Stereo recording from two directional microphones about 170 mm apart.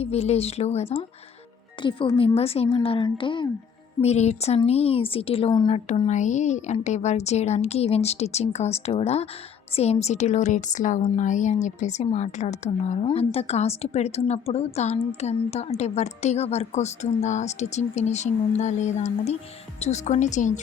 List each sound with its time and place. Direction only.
0.0 s a woman's voice: 40° left (ahead or behind)
1.8 s a woman's voice: 25° left (ahead or behind)
4.0 s a woman's voice: 40° left (ahead or behind)
5.6 s a woman's voice: 45° left (ahead or behind)